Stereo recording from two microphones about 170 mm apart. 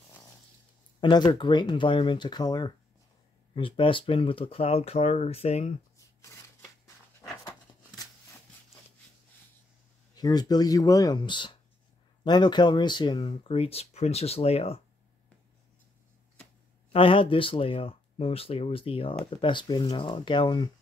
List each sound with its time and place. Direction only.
1.0 s speech: 25° left (ahead or behind)
10.1 s speech: 25° left (ahead or behind)
16.9 s speech: 30° left (ahead or behind)